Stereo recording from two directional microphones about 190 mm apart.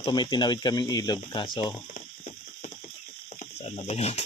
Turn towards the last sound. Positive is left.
turn(degrees=35)  # may be behind; listen again after turning